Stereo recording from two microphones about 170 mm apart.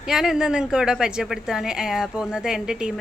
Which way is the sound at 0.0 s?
5° right (ahead or behind).